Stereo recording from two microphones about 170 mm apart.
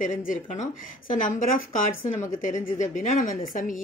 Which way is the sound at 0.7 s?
50° left (ahead or behind).